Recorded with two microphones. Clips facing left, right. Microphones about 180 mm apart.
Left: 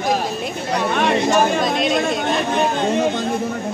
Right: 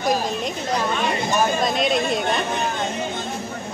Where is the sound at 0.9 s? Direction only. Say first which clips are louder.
Left 5 dB; 65° left (ahead or behind).